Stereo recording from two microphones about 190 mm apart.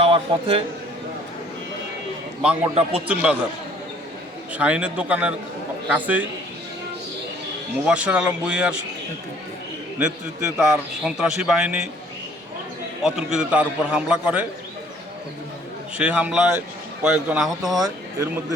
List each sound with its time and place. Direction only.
0.0 s a man's voice: 30° right (ahead or behind)
2.4 s a man's voice: 5° right (ahead or behind)
4.5 s a man's voice: 5° right (ahead or behind)
7.9 s a man's voice: 5° right (ahead or behind)
10.6 s a man's voice: 5° right (ahead or behind)
13.0 s a man's voice: 5° right (ahead or behind)
16.0 s a man's voice: 5° right (ahead or behind)
17.7 s speech: 20° right (ahead or behind)